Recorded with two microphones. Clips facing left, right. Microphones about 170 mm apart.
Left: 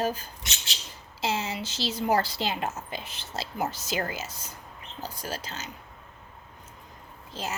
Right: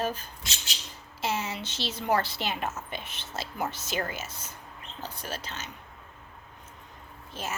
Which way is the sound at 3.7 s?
25° right (ahead or behind).